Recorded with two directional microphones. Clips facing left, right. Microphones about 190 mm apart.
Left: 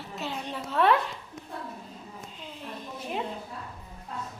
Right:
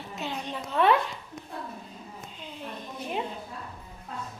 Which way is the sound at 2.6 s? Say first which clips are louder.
Right 1 dB; centre (ahead or behind).